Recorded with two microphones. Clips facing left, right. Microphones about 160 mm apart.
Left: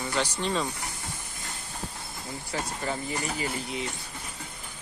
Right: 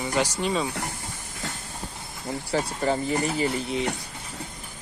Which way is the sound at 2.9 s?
50° right (ahead or behind).